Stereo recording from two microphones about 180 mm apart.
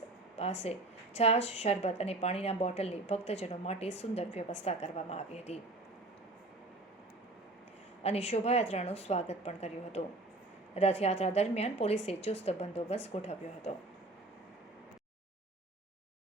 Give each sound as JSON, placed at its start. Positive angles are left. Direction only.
{"t": 0.6, "sound": "a woman's voice", "side_deg": 35}
{"t": 8.0, "sound": "a woman's voice", "side_deg": 35}